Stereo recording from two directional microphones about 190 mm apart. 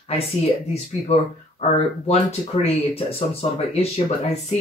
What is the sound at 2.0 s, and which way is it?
Speech, 30° left (ahead or behind).